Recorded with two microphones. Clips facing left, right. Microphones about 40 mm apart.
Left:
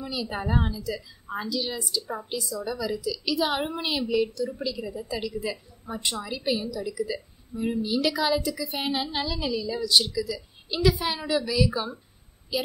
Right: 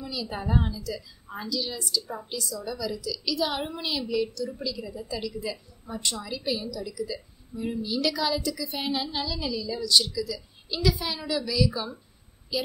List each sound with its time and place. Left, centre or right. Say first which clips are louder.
0.0 s a woman's voice: left 2 dB; centre